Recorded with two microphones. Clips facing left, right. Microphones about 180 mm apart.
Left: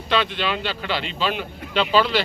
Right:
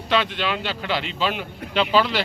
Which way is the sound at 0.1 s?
15° right (ahead or behind).